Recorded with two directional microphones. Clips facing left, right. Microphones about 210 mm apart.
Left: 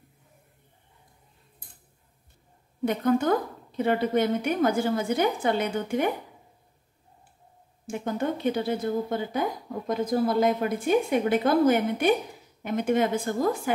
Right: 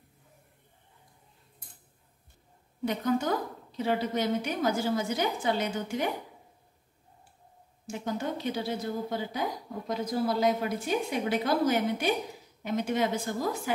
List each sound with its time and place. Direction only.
2.8 s a woman's voice: 55° left (ahead or behind)
7.8 s speech: 55° left (ahead or behind)